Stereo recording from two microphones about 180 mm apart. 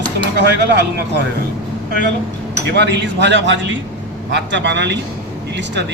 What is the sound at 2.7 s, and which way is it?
A man's voice, 70° right (ahead or behind).